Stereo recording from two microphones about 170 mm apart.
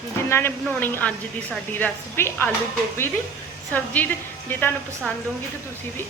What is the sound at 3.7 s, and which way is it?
A woman's voice, 10° left (ahead or behind).